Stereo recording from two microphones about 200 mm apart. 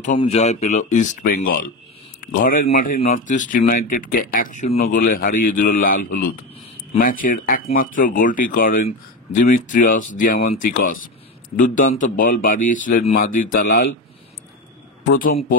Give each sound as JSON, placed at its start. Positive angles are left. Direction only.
{"t": 0.2, "sound": "speech", "side_deg": 30}